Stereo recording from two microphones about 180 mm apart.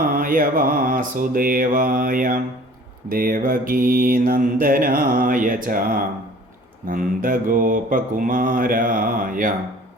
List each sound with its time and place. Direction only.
0.0 s mantra: 50° right (ahead or behind)